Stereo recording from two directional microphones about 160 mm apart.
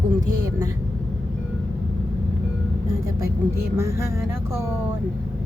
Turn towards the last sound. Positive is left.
turn(degrees=-15)  # may be behind; listen again after turning